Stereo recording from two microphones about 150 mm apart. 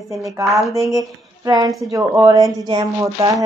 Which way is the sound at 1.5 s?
25° right (ahead or behind).